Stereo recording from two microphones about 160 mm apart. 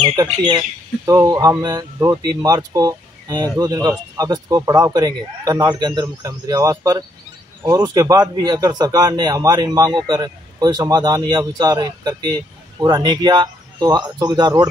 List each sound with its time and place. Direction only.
0.0 s speech: 25° right (ahead or behind)